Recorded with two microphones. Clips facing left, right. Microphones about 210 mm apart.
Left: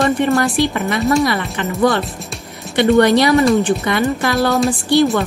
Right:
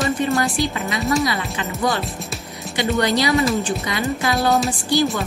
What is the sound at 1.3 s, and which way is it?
A woman's voice, 60° left (ahead or behind).